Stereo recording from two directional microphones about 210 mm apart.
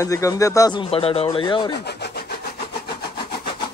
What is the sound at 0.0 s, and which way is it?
Speech, 15° left (ahead or behind).